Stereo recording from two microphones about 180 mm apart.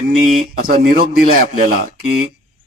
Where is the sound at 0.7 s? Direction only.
55° right (ahead or behind).